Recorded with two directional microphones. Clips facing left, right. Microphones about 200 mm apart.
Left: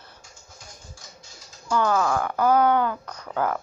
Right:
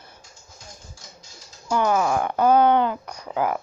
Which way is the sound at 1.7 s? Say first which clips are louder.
Right 1 dB; 15° right (ahead or behind).